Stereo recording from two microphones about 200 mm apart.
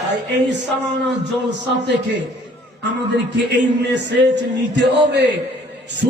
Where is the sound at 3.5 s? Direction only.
60° right (ahead or behind).